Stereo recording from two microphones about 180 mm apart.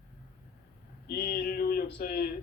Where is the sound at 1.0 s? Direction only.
55° left (ahead or behind).